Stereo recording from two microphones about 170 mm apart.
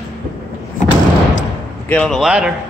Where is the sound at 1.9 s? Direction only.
10° left (ahead or behind).